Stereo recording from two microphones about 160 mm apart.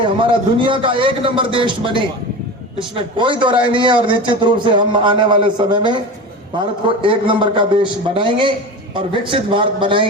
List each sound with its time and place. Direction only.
0.0 s a man's voice: 30° right (ahead or behind)